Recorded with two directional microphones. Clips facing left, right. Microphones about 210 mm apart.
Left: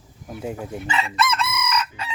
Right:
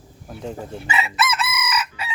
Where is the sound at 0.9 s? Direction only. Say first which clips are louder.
Even; 5° right (ahead or behind).